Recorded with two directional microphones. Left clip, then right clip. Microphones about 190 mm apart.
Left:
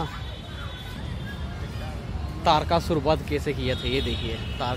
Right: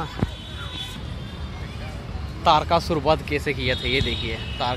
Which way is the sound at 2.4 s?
15° left (ahead or behind).